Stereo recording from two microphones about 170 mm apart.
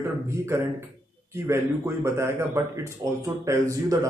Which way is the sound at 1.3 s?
15° right (ahead or behind).